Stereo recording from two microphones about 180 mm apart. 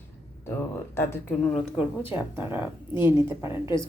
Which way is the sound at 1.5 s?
5° right (ahead or behind).